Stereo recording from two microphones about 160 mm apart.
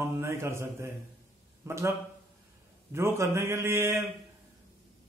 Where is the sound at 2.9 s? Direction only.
15° right (ahead or behind).